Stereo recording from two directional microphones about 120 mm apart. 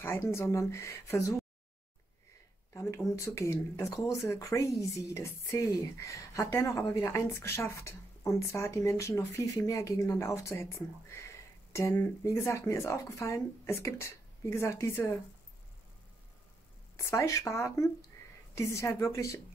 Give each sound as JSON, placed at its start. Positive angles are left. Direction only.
{"t": 0.0, "sound": "speech", "side_deg": 20}
{"t": 2.7, "sound": "speech", "side_deg": 25}
{"t": 17.0, "sound": "speech", "side_deg": 25}